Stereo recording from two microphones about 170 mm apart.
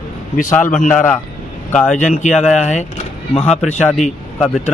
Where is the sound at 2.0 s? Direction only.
45° left (ahead or behind).